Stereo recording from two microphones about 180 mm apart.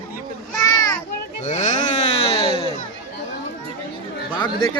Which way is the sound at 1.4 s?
40° left (ahead or behind).